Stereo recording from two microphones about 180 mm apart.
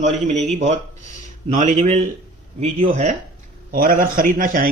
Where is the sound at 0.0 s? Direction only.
40° right (ahead or behind).